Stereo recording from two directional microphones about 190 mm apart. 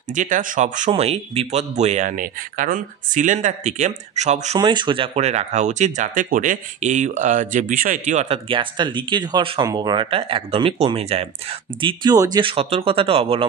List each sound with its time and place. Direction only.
0.1 s speech: 40° right (ahead or behind)
4.6 s speech: 25° right (ahead or behind)
11.8 s speech: 20° right (ahead or behind)